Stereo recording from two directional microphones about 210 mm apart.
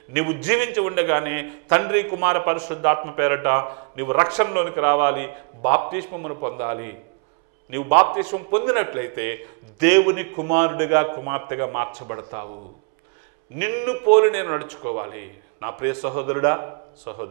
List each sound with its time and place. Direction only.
0.1 s a man's voice: 15° right (ahead or behind)
13.6 s a man's voice: 15° right (ahead or behind)